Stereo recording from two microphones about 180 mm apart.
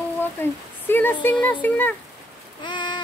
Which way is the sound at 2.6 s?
25° left (ahead or behind).